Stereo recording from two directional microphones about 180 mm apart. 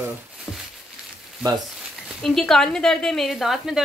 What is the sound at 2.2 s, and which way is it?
Speech, centre (ahead or behind).